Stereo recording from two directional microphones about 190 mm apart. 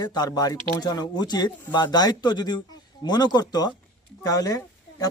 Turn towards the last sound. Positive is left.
turn(degrees=20)  # may be behind; listen again after turning